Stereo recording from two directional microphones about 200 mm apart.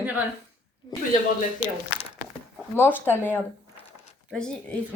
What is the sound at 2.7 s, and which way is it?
A woman's voice, 10° left (ahead or behind).